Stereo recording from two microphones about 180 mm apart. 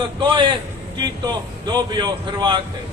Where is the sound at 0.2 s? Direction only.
25° right (ahead or behind).